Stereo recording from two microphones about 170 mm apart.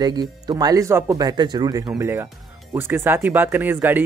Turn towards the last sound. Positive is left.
turn(degrees=-10)  # may be behind; listen again after turning